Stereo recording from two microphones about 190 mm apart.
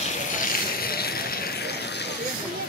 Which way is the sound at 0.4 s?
55° left (ahead or behind).